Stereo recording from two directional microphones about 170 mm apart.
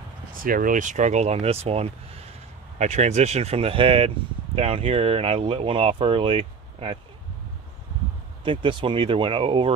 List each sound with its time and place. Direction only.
0.3 s speech: 55° right (ahead or behind); by 7.0 s 35° right (ahead or behind)
8.5 s speech: 30° right (ahead or behind)